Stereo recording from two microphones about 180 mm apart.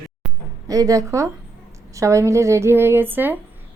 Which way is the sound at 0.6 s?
20° right (ahead or behind).